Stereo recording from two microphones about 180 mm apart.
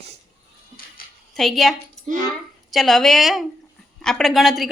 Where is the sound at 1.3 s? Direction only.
Centre (ahead or behind).